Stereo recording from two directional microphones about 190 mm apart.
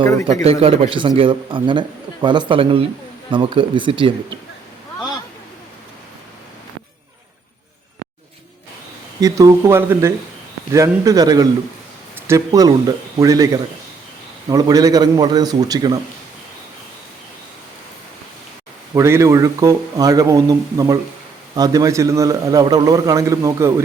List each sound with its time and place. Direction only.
0.6 s a man's voice: 30° right (ahead or behind)
9.2 s a man's voice: 15° right (ahead or behind)
18.9 s a man's voice: 15° right (ahead or behind)